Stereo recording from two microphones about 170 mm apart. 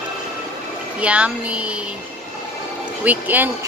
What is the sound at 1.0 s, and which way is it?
Speech, 5° right (ahead or behind).